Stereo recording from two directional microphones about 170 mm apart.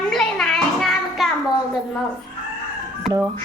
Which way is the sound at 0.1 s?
Centre (ahead or behind).